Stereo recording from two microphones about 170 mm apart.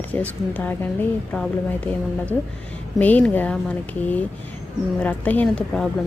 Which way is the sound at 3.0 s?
10° left (ahead or behind).